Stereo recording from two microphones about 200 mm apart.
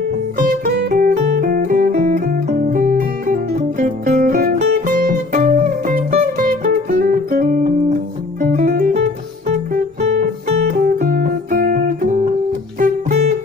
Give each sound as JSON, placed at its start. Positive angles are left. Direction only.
{"t": 0.4, "sound": "music", "side_deg": -45}